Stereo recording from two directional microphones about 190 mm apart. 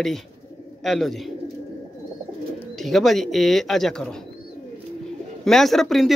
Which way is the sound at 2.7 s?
Centre (ahead or behind).